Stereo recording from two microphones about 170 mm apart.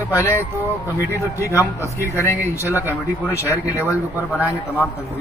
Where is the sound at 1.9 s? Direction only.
15° left (ahead or behind).